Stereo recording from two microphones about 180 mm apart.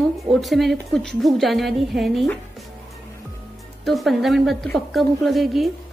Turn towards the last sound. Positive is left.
turn(degrees=0)  # may be behind; listen again after turning